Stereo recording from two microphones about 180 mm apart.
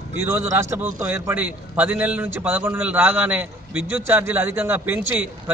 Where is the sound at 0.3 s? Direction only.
15° right (ahead or behind).